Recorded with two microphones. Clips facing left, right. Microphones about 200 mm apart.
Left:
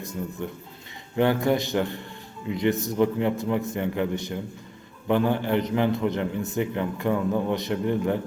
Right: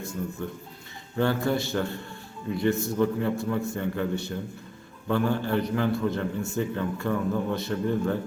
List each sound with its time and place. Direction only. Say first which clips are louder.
0.0 s a man's voice: left 1 dB; 15° left (ahead or behind)